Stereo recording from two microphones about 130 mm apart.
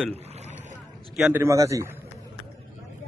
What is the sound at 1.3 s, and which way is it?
Speech, 25° right (ahead or behind).